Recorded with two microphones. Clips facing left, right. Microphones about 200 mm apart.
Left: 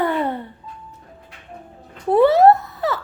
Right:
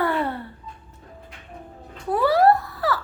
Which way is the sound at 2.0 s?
25° left (ahead or behind).